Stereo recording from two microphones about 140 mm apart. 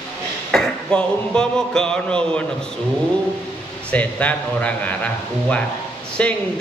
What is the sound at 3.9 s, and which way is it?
A man's voice, 10° left (ahead or behind).